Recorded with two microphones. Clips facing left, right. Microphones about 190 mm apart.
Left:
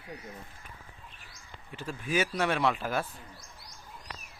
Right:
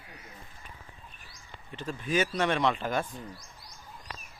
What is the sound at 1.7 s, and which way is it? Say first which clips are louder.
Speech: right 1 dB; 10° left (ahead or behind).